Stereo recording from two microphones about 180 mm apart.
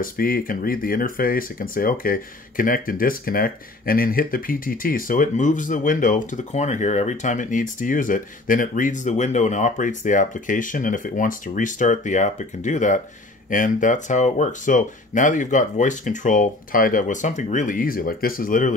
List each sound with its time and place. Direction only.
0.0 s speech: 50° left (ahead or behind)